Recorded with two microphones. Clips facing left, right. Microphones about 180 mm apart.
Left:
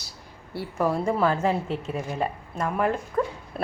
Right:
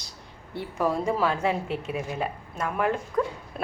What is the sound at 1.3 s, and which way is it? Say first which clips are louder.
A woman's voice: left 2 dB; 5° right (ahead or behind).